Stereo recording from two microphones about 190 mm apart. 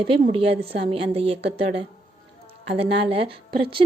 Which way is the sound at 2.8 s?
30° right (ahead or behind).